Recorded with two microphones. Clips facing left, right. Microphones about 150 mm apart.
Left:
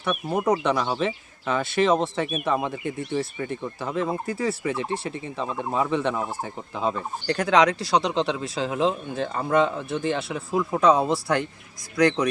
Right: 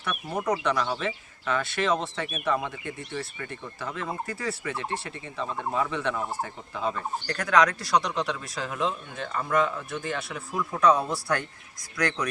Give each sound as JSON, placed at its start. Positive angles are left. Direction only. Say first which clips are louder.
{"t": 0.0, "sound": "speech", "louder": "left 6 dB", "side_deg": 25}